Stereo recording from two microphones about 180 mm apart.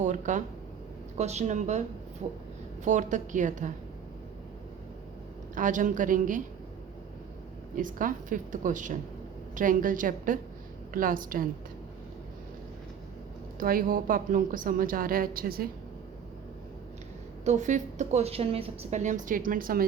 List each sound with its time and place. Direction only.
0.0 s a woman's voice: 45° right (ahead or behind)
2.8 s a woman's voice: 45° right (ahead or behind)
5.5 s a woman's voice: 45° right (ahead or behind)
7.8 s a woman's voice: 50° right (ahead or behind)
13.6 s a woman's voice: 50° right (ahead or behind)
17.4 s a woman's voice: 40° right (ahead or behind)